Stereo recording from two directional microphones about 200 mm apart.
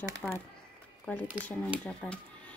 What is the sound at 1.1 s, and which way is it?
Speech, 5° left (ahead or behind).